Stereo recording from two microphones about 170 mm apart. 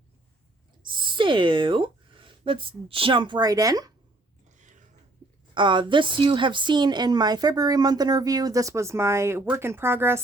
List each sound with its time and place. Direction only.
0.9 s speech: 30° right (ahead or behind)
4.5 s a sound: 45° right (ahead or behind)
5.5 s a woman's voice: 30° right (ahead or behind)